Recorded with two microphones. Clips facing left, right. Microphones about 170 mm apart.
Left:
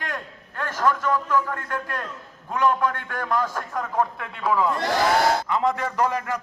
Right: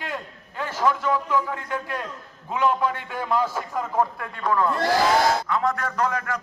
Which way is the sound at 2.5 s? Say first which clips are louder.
Left 1 dB; 10° right (ahead or behind).